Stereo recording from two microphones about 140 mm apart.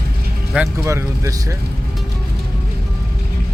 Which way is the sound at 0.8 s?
20° right (ahead or behind).